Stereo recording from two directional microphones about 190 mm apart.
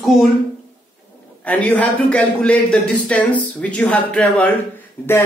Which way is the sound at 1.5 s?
10° left (ahead or behind).